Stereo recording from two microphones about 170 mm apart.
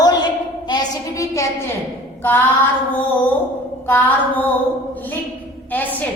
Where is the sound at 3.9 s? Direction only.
10° left (ahead or behind).